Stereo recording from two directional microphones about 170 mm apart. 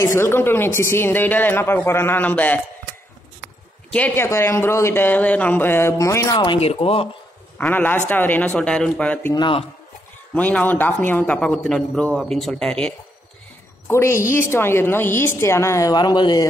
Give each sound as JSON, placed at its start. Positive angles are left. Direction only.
{"t": 0.0, "sound": "a man's voice", "side_deg": 15}
{"t": 3.9, "sound": "a man's voice", "side_deg": 10}
{"t": 7.5, "sound": "a man's voice", "side_deg": 10}
{"t": 9.3, "sound": "a man's voice", "side_deg": 30}
{"t": 10.3, "sound": "a man's voice", "side_deg": 10}